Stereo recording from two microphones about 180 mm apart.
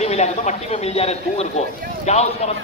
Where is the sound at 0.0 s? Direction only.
40° left (ahead or behind).